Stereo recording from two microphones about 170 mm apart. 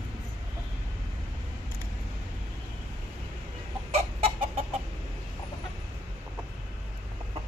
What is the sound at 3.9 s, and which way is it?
Chicken, 35° right (ahead or behind).